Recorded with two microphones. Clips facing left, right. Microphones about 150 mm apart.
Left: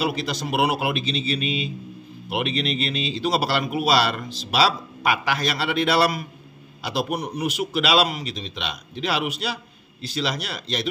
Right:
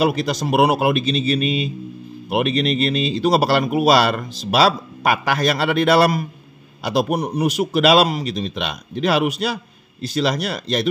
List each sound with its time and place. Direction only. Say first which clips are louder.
0.0 s speech: right 6 dB; 45° right (ahead or behind)